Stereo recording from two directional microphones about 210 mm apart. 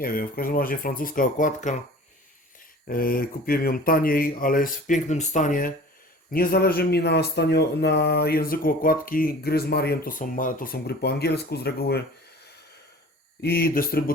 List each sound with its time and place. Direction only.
0.0 s speech: 45° left (ahead or behind)
2.8 s speech: 45° left (ahead or behind)
13.4 s speech: 50° left (ahead or behind)